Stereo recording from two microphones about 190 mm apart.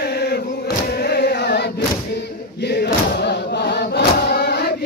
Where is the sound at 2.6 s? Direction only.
60° left (ahead or behind).